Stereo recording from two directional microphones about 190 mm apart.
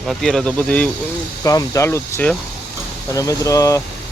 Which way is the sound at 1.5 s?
15° left (ahead or behind).